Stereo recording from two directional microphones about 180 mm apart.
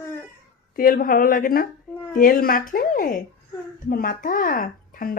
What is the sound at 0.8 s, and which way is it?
Speech, 50° left (ahead or behind).